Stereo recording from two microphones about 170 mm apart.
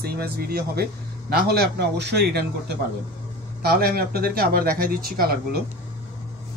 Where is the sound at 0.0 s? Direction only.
65° right (ahead or behind).